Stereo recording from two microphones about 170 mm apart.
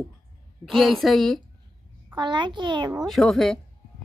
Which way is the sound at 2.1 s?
25° right (ahead or behind).